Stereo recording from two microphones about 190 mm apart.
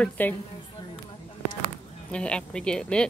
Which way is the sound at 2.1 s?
5° left (ahead or behind).